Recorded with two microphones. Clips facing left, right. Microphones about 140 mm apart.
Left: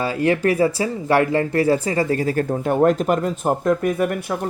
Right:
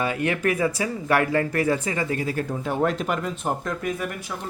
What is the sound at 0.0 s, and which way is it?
Speech, 30° left (ahead or behind).